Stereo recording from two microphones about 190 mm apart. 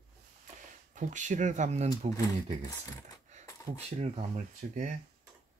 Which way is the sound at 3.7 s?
35° right (ahead or behind).